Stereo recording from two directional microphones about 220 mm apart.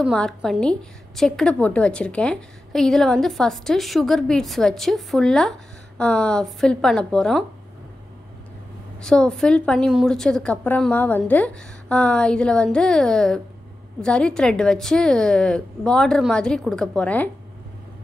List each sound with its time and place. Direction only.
0.0 s a woman's voice: centre (ahead or behind)
9.0 s a woman's voice: 5° left (ahead or behind)